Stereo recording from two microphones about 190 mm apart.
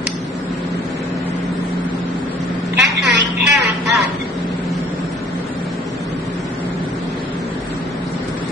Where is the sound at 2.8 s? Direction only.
65° right (ahead or behind).